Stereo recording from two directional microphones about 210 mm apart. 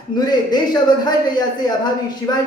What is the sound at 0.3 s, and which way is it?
A man's voice, 20° left (ahead or behind).